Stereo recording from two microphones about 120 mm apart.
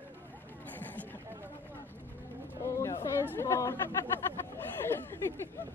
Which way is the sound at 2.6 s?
20° left (ahead or behind).